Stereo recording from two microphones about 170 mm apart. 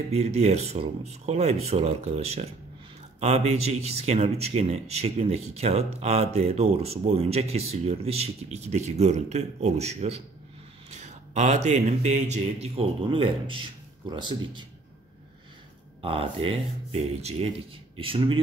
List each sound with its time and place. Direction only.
0.1 s speech: 40° right (ahead or behind)
16.0 s speech: 35° right (ahead or behind)